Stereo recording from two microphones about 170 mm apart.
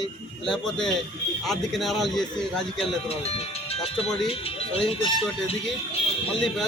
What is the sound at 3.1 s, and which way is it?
Speech, 35° left (ahead or behind).